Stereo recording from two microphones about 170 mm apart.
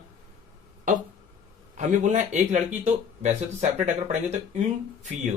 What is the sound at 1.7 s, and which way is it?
Speech, 45° right (ahead or behind).